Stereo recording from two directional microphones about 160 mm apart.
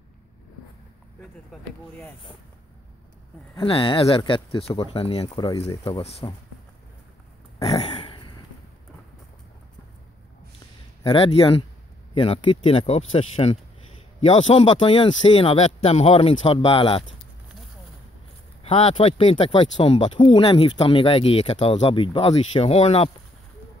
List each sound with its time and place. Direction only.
3.5 s speech: 35° left (ahead or behind)
7.6 s a sound: 40° left (ahead or behind)
11.1 s speech: 35° left (ahead or behind)
18.6 s speech: 40° left (ahead or behind)